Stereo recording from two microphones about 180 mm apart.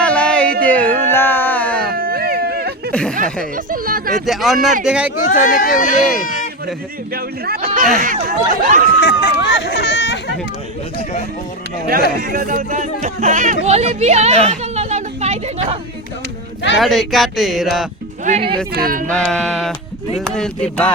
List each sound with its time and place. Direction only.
0.0 s a sound: 5° left (ahead or behind)
1.9 s a sound: 55° right (ahead or behind)
2.9 s a sound: 5° left (ahead or behind)
3.5 s speech: 50° right (ahead or behind)
4.1 s speech: centre (ahead or behind)
5.2 s speech: 45° left (ahead or behind)
7.1 s speech: 55° right (ahead or behind)
9.0 s speech: 80° left
12.2 s a woman's voice: 55° right (ahead or behind); by 14.3 s 40° right (ahead or behind)
14.5 s chatter: 40° right (ahead or behind)
16.7 s speech: centre (ahead or behind)
18.3 s a woman's voice: 35° right (ahead or behind)
18.7 s speech: 55° right (ahead or behind)
19.0 s speech: 5° left (ahead or behind)